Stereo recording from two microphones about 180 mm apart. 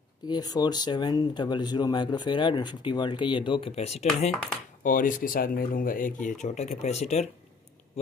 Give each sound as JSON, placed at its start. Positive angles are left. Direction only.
{"t": 0.3, "sound": "speech", "side_deg": 20}
{"t": 4.8, "sound": "speech", "side_deg": 50}